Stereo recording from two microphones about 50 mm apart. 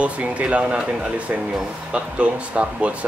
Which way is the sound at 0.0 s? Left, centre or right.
Right.